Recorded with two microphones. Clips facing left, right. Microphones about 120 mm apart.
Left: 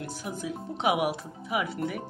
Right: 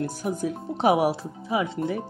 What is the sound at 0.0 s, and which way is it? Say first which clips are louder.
Speech: right 8 dB; 45° right (ahead or behind).